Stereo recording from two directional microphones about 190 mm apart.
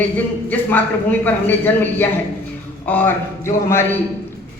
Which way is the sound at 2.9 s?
10° left (ahead or behind).